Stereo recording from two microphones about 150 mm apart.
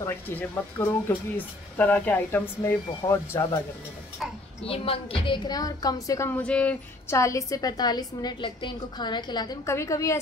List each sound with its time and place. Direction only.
0.0 s speech: 15° left (ahead or behind)
4.6 s a woman's voice: 40° left (ahead or behind); by 7.2 s 10° left (ahead or behind)
7.2 s a woman's voice: 20° left (ahead or behind)